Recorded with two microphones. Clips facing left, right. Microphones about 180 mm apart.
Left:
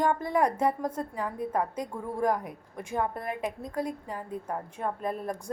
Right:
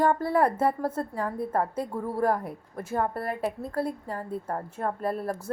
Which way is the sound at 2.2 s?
15° left (ahead or behind).